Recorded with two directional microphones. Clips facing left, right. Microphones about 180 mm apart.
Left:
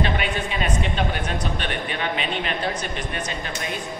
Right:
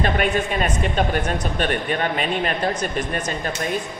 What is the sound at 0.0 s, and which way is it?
Speech, 45° right (ahead or behind).